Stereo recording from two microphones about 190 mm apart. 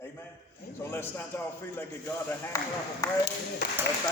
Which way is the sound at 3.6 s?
55° left (ahead or behind).